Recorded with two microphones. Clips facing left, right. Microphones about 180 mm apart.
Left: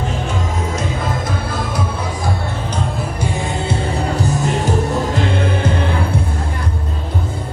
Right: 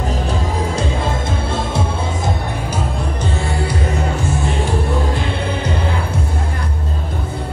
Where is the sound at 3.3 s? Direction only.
20° left (ahead or behind).